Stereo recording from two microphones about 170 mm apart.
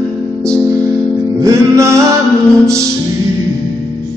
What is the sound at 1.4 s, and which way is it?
Music, 15° right (ahead or behind).